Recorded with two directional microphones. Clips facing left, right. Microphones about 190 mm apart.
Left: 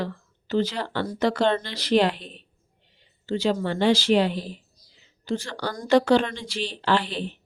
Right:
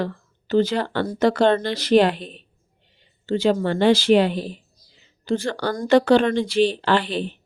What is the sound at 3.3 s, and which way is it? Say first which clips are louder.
Speech: right 4 dB; 55° right (ahead or behind).